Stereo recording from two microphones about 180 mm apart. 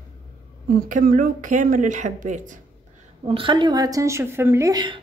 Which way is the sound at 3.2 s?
30° right (ahead or behind).